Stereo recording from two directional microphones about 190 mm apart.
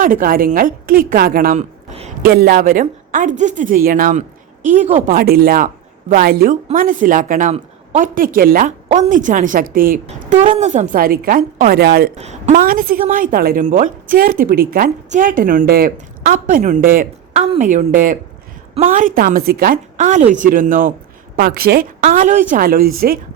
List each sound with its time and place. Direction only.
0.0 s a woman's voice: 45° right (ahead or behind)
5.0 s a woman's voice: 50° right (ahead or behind)
12.1 s a woman's voice: 35° right (ahead or behind)